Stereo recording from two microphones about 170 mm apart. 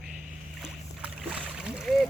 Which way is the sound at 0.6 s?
5° right (ahead or behind).